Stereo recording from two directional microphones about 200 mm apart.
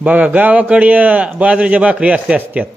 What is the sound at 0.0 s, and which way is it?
Speech, 10° right (ahead or behind).